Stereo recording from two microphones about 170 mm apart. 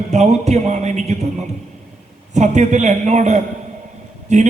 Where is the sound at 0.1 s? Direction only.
40° right (ahead or behind).